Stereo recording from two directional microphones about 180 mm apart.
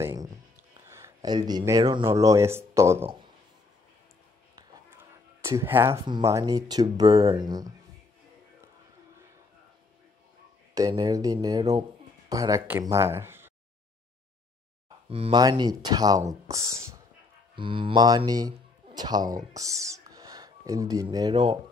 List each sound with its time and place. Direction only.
0.8 s speech: 15° right (ahead or behind)
4.6 s a sound: 15° right (ahead or behind)
6.0 s speech: 20° right (ahead or behind)
10.7 s speech: 20° right (ahead or behind)
15.0 s speech: 35° right (ahead or behind)
15.4 s speech: 20° right (ahead or behind)